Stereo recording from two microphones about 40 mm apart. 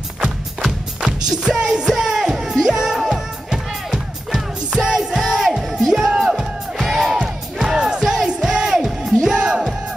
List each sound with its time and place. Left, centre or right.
1.0 s music: right